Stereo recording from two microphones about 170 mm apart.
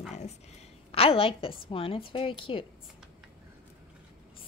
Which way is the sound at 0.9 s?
35° left (ahead or behind).